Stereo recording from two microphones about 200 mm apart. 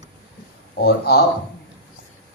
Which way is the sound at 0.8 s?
50° left (ahead or behind).